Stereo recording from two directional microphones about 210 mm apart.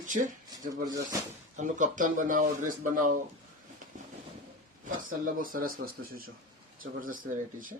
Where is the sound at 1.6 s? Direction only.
35° right (ahead or behind).